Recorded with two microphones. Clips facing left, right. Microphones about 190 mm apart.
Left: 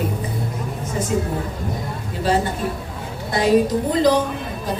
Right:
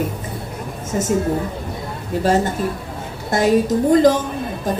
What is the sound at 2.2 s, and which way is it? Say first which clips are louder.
A woman's voice: right 2 dB; 45° right (ahead or behind).